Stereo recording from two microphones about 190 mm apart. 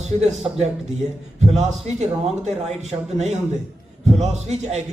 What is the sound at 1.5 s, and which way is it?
A man's voice, 35° right (ahead or behind).